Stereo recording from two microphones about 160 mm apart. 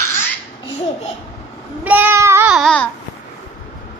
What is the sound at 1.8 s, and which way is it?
Child singing, 10° right (ahead or behind).